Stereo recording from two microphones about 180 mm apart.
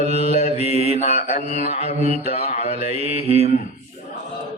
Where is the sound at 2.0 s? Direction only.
35° right (ahead or behind).